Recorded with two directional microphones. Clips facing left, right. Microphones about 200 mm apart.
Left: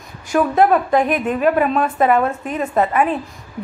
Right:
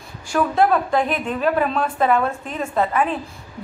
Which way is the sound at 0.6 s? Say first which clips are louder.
Left 3 dB; 50° left (ahead or behind).